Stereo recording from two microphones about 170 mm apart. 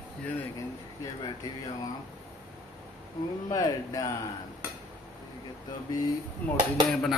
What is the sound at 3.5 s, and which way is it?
Speech, 20° left (ahead or behind).